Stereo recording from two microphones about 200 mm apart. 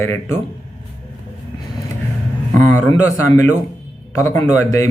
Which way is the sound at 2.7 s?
15° left (ahead or behind).